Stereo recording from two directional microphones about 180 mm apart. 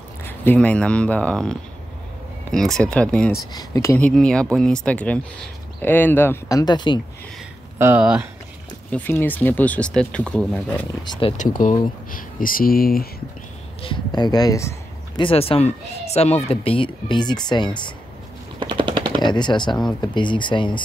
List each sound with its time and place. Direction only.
0.2 s speech: 10° left (ahead or behind)
3.5 s speech: 20° left (ahead or behind)
4.1 s speech: 5° left (ahead or behind); by 7.0 s 25° left (ahead or behind)
7.8 s speech: 10° right (ahead or behind)
8.9 s speech: 10° left (ahead or behind)
11.1 s speech: 30° left (ahead or behind)
11.3 s speech: 45° left (ahead or behind)
13.8 s speech: 25° left (ahead or behind)
15.2 s speech: 30° left (ahead or behind)
18.6 s machine gun: 25° right (ahead or behind)
19.2 s speech: 25° left (ahead or behind)